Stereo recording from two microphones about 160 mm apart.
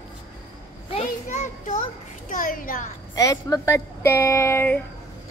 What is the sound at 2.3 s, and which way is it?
Speech, 60° left (ahead or behind).